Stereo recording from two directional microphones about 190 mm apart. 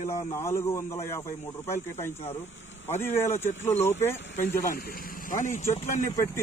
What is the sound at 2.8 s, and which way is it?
Speech, 10° left (ahead or behind).